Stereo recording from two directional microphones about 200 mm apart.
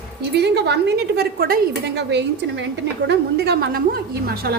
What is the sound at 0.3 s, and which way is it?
A woman's voice, 55° right (ahead or behind).